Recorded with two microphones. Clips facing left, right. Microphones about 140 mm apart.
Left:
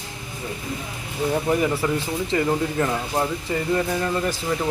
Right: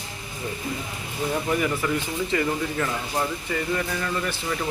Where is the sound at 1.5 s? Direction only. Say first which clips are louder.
Left 2 dB; 30° left (ahead or behind).